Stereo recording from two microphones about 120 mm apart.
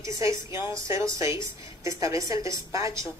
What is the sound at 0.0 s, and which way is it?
A woman's voice, 25° right (ahead or behind).